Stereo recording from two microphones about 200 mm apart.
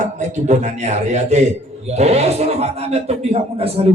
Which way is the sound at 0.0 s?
35° right (ahead or behind).